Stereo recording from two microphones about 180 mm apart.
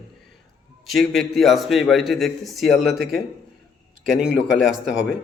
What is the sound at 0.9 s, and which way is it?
A man's voice, centre (ahead or behind).